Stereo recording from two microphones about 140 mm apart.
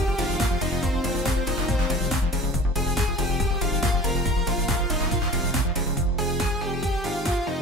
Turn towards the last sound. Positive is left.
turn(degrees=0)  # may be behind; listen again after turning